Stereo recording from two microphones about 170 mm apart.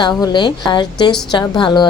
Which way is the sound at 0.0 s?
25° left (ahead or behind).